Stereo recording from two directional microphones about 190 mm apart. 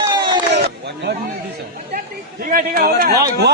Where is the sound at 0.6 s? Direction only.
55° right (ahead or behind).